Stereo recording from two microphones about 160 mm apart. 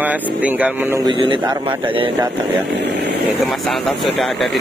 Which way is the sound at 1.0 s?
30° right (ahead or behind).